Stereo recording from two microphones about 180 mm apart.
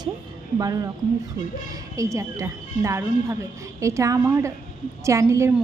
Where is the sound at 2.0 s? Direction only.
15° right (ahead or behind).